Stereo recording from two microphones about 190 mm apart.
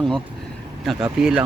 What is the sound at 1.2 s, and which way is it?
Speech, 5° right (ahead or behind).